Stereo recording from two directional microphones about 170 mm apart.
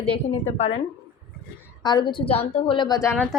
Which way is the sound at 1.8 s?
25° left (ahead or behind).